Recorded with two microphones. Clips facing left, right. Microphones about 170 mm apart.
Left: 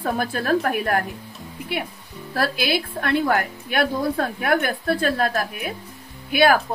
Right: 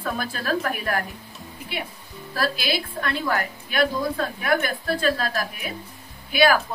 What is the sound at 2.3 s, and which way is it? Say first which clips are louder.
A woman's voice: left 3 dB; 60° left (ahead or behind).